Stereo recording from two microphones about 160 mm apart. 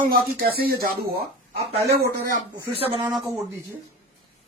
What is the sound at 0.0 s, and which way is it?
Speech, 70° right (ahead or behind).